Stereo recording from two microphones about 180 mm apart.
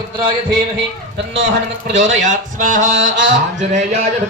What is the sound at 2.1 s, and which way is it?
Speech, 45° right (ahead or behind).